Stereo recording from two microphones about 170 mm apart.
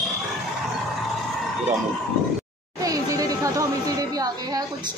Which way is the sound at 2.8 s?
20° right (ahead or behind).